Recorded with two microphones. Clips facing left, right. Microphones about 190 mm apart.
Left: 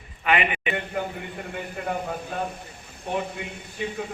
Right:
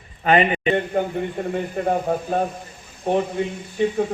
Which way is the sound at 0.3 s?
35° right (ahead or behind).